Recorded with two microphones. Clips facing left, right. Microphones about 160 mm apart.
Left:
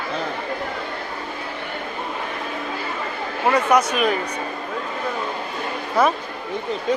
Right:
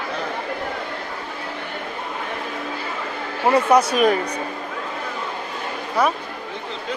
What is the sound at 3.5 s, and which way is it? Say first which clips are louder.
Speech: right 2 dB; 30° right (ahead or behind).